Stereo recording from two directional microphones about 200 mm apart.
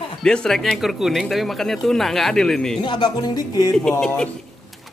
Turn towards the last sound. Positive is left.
turn(degrees=5)  # may be behind; listen again after turning